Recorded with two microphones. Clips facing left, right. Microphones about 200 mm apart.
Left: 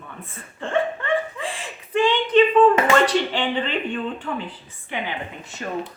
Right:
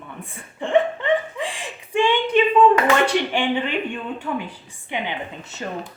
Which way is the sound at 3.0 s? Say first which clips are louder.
Right 1 dB; 10° right (ahead or behind).